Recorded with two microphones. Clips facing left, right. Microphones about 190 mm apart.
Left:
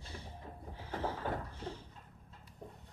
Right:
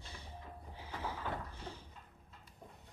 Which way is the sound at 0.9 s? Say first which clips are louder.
Left 4 dB; 50° left (ahead or behind).